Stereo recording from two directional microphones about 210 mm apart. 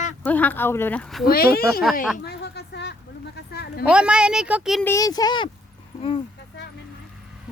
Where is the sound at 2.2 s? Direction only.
55° left (ahead or behind).